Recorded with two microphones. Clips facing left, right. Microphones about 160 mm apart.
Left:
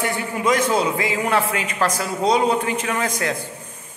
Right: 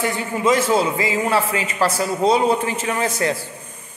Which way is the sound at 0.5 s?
5° right (ahead or behind).